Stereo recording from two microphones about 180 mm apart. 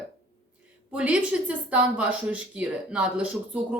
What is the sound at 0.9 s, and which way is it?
Speech, 5° right (ahead or behind).